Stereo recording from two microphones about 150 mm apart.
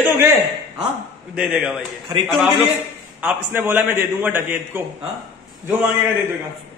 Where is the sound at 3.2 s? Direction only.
10° right (ahead or behind).